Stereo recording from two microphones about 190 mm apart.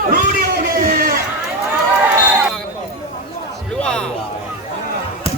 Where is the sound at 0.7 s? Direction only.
50° right (ahead or behind).